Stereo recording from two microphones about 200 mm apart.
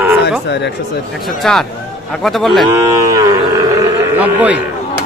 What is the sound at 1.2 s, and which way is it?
Speech, centre (ahead or behind).